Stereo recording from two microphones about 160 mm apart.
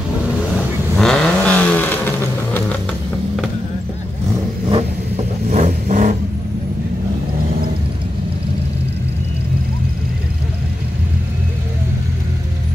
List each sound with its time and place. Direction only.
0.9 s vehicle: 5° left (ahead or behind)
4.6 s vehicle: 35° right (ahead or behind)
5.5 s vehicle: 50° right (ahead or behind)